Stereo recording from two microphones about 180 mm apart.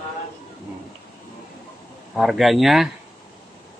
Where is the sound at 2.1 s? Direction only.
Centre (ahead or behind).